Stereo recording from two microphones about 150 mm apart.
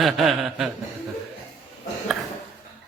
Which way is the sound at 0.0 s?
Centre (ahead or behind).